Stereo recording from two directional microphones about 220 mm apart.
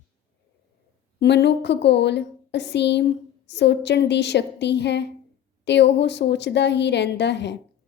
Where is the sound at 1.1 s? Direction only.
50° left (ahead or behind).